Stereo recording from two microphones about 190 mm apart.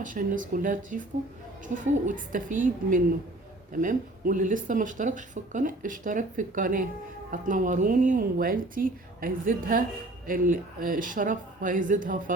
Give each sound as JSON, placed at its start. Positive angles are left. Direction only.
{"t": 0.0, "sound": "speech", "side_deg": -45}